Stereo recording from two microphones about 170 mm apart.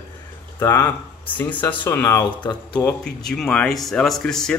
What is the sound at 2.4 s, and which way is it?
Speech, 25° left (ahead or behind).